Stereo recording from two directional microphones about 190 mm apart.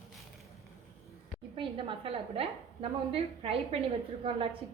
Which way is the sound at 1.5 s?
25° right (ahead or behind).